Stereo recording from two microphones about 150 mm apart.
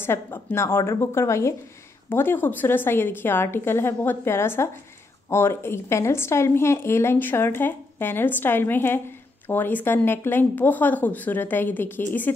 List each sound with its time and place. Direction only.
0.0 s a woman's voice: 15° left (ahead or behind)